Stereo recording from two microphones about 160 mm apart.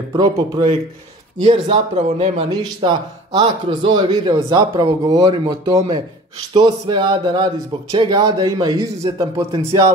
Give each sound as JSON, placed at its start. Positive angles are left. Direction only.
{"t": 0.1, "sound": "a man's voice", "side_deg": -25}
{"t": 1.4, "sound": "speech", "side_deg": -35}
{"t": 2.6, "sound": "a man's voice", "side_deg": -25}